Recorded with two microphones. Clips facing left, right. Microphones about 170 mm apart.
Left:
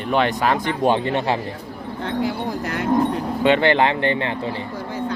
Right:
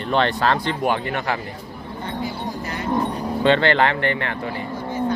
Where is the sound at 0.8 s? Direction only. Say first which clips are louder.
Left 6 dB; 25° left (ahead or behind).